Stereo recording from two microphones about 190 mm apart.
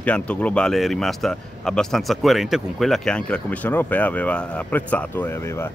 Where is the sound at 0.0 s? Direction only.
5° left (ahead or behind).